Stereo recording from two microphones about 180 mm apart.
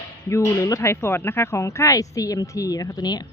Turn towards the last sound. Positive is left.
turn(degrees=20)  # may be behind; listen again after turning